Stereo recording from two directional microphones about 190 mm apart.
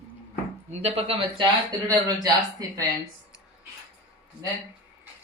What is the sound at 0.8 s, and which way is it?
Speech, 30° right (ahead or behind).